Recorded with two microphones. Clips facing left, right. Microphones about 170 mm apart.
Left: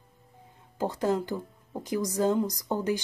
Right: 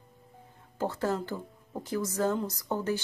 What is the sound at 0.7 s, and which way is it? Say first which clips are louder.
A woman's voice: left 3 dB; 15° left (ahead or behind).